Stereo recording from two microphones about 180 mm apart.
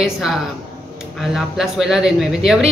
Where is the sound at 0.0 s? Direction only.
Centre (ahead or behind).